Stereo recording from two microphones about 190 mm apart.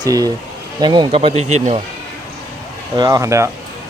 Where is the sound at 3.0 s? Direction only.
20° right (ahead or behind).